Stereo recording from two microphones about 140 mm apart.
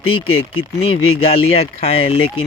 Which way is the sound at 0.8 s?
45° left (ahead or behind).